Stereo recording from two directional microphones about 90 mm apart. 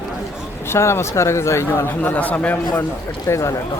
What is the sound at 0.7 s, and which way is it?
Speech, 30° left (ahead or behind).